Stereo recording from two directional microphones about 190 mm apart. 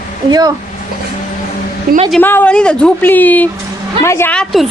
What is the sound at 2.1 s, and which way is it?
A woman's voice, 10° left (ahead or behind).